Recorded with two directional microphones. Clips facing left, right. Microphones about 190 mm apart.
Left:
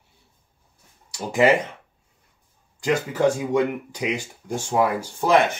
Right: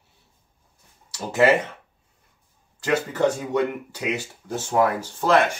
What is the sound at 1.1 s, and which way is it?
Speech, 10° left (ahead or behind).